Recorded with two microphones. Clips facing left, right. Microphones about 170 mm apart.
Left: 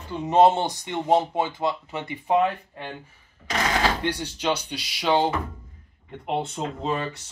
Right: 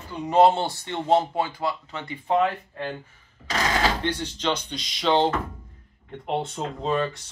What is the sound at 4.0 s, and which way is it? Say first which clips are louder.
Speech: even; 10° left (ahead or behind).